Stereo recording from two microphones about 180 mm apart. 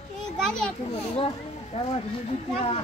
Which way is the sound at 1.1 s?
35° left (ahead or behind).